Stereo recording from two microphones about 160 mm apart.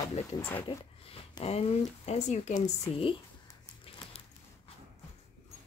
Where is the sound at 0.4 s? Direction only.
15° left (ahead or behind).